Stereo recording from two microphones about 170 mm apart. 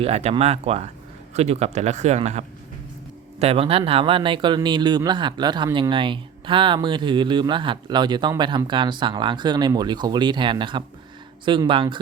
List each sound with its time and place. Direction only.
0.0 s speech: 35° right (ahead or behind)
3.4 s speech: 35° right (ahead or behind)